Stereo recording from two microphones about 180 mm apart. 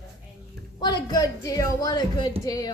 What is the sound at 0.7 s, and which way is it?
A man's voice, 25° left (ahead or behind).